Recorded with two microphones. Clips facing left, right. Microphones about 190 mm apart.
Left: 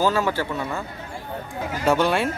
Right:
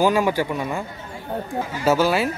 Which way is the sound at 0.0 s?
15° right (ahead or behind).